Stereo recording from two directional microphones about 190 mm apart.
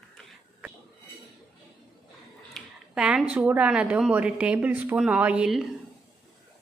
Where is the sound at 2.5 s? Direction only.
5° right (ahead or behind).